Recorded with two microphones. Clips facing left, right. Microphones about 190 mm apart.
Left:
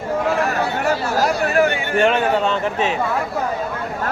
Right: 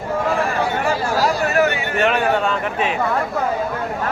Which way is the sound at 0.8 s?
45° left (ahead or behind).